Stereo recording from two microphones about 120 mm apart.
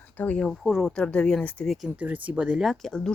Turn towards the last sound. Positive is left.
turn(degrees=5)  # may be behind; listen again after turning